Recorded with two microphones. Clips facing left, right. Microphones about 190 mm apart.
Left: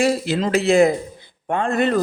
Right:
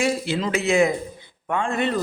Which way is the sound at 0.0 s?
40° left (ahead or behind).